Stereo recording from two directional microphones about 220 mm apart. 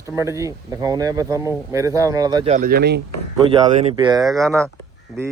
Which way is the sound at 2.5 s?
40° right (ahead or behind).